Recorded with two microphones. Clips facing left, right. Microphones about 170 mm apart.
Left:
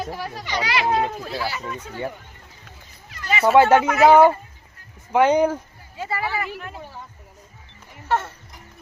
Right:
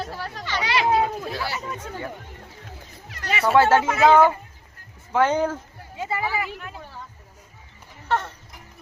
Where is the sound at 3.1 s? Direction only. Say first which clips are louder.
Left 2 dB; 65° right (ahead or behind).